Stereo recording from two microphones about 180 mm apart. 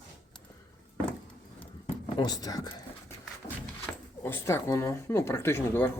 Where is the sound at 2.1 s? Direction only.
20° left (ahead or behind).